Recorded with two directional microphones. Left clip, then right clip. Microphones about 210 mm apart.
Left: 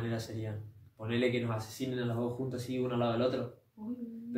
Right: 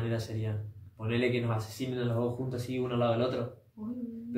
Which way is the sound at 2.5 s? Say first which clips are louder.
Right 1 dB; 5° left (ahead or behind).